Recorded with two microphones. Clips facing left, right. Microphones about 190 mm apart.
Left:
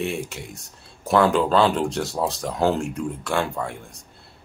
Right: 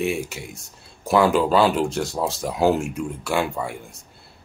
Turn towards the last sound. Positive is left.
turn(degrees=-5)  # may be behind; listen again after turning